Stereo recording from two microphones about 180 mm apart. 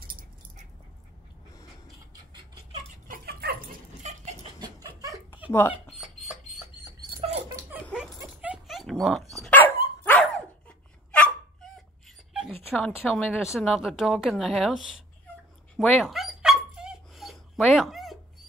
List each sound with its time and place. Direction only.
3.1 s dog: 60° right (ahead or behind)
4.0 s dog: 40° right (ahead or behind)
4.8 s laughter: 20° right (ahead or behind)
5.5 s speech: 10° left (ahead or behind)
6.2 s bird: centre (ahead or behind)
7.2 s dog: 35° right (ahead or behind)
7.9 s dog: 5° right (ahead or behind)
11.1 s hiccup: 5° left (ahead or behind)
12.7 s a woman's voice: 5° left (ahead or behind)
15.8 s dog: centre (ahead or behind)